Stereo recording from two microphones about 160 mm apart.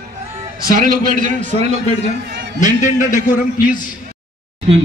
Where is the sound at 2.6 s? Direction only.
55° left (ahead or behind).